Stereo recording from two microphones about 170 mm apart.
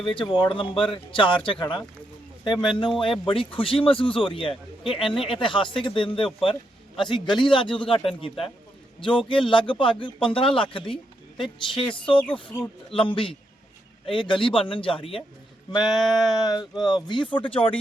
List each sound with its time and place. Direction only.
0.0 s speech: 30° left (ahead or behind)